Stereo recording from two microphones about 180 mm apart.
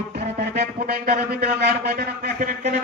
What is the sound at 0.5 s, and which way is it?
Speech, 65° right (ahead or behind).